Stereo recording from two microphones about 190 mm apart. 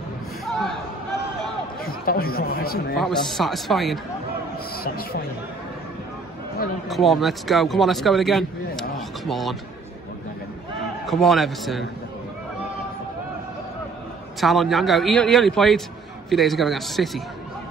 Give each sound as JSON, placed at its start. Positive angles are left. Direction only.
{"t": 0.5, "sound": "a sound", "side_deg": 0}
{"t": 1.9, "sound": "speech", "side_deg": 50}
{"t": 3.0, "sound": "speech", "side_deg": 0}
{"t": 4.8, "sound": "speech", "side_deg": 55}
{"t": 6.9, "sound": "speech", "side_deg": 0}
{"t": 11.1, "sound": "speech", "side_deg": 0}
{"t": 14.4, "sound": "speech", "side_deg": 0}